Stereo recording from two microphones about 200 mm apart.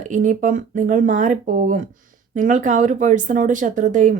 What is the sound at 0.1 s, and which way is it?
Speech, 40° right (ahead or behind).